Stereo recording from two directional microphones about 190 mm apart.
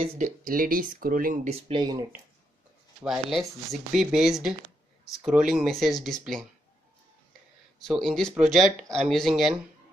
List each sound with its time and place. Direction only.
0.2 s speech: 45° right (ahead or behind); by 2.0 s 25° right (ahead or behind)
3.0 s speech: centre (ahead or behind)
7.8 s speech: centre (ahead or behind)